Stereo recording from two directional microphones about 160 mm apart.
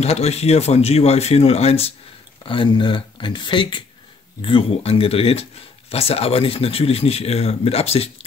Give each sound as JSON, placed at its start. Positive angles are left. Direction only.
{"t": 0.0, "sound": "speech", "side_deg": 40}